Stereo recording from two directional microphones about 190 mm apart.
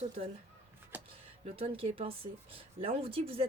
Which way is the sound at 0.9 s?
10° right (ahead or behind).